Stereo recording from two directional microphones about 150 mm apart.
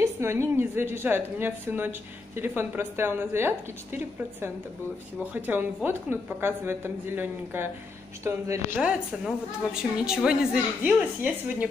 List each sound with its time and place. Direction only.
0.0 s a woman's voice: 20° right (ahead or behind)
8.7 s a woman's voice: 5° right (ahead or behind)